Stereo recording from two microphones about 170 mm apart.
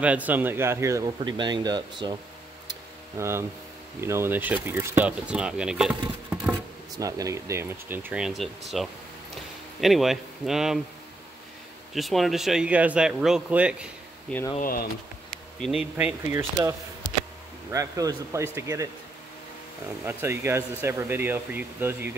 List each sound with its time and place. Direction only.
0.0 s speech: 10° right (ahead or behind); by 2.1 s 25° right (ahead or behind)
3.2 s speech: 15° right (ahead or behind)
7.0 s speech: 20° right (ahead or behind); by 10.8 s centre (ahead or behind)
11.9 s speech: centre (ahead or behind)
14.6 s speech: 60° left (ahead or behind)
15.6 s speech: 5° right (ahead or behind)
20.1 s speech: 15° right (ahead or behind)